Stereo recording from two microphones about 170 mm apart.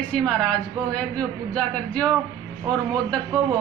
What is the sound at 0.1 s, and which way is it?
A woman's voice, 5° left (ahead or behind).